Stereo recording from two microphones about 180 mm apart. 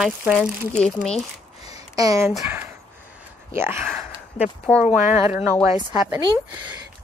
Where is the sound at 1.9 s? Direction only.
20° right (ahead or behind).